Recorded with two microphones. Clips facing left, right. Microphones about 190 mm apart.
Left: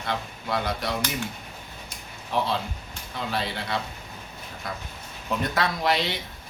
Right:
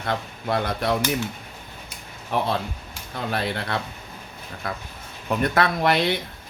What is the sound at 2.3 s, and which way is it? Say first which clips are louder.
Speech: right 2 dB; 55° right (ahead or behind).